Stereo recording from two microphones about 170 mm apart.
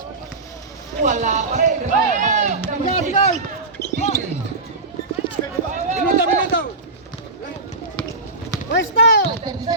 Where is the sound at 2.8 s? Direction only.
40° left (ahead or behind).